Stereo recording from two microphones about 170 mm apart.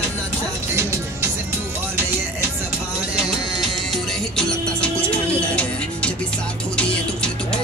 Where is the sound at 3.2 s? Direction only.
Centre (ahead or behind).